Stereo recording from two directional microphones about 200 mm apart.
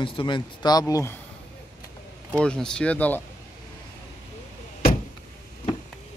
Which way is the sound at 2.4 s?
5° left (ahead or behind).